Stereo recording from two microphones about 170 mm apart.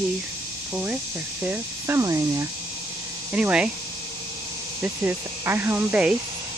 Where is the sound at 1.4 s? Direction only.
15° right (ahead or behind).